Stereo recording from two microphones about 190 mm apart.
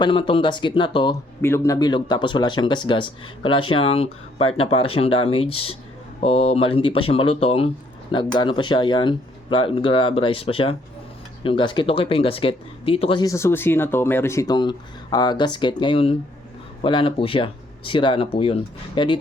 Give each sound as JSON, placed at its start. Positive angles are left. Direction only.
{"t": 0.0, "sound": "speech", "side_deg": 25}
{"t": 1.4, "sound": "speech", "side_deg": 15}